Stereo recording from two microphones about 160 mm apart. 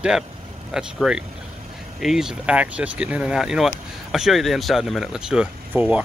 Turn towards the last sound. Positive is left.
turn(degrees=-10)  # may be behind; listen again after turning